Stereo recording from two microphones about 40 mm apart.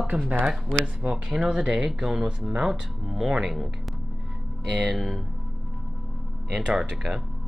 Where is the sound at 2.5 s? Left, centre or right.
Right.